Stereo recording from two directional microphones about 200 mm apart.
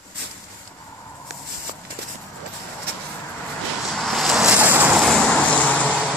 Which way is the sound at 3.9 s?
Centre (ahead or behind).